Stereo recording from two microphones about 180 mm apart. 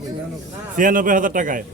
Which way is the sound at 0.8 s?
45° right (ahead or behind).